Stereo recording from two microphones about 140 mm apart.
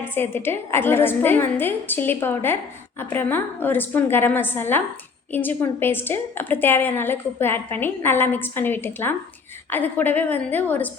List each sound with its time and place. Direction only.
0.0 s a woman's voice: 15° left (ahead or behind)